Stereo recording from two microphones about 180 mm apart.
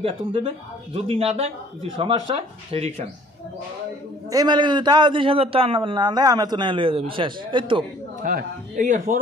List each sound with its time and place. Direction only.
0.0 s a man's voice: 30° right (ahead or behind)
4.3 s a man's voice: 20° right (ahead or behind)
8.2 s speech: 50° right (ahead or behind)